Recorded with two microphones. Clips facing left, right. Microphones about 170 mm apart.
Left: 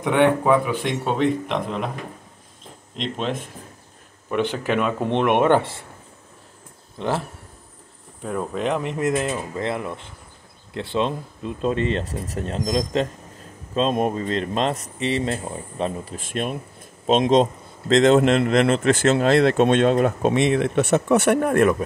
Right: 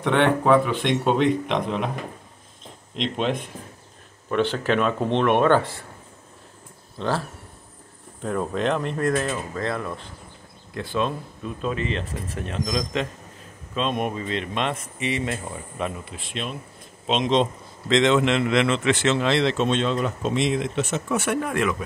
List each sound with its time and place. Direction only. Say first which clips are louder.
0.0 s speech: left 2 dB; 10° left (ahead or behind)
3.0 s speech: right 2 dB; centre (ahead or behind)
4.3 s speech: even; 15° left (ahead or behind)
7.0 s speech: left 1 dB; 20° left (ahead or behind)
8.2 s speech: right 1 dB; 5° left (ahead or behind); by 16.2 s 30° left (ahead or behind)
16.2 s a man's voice: left 6 dB; 50° left (ahead or behind)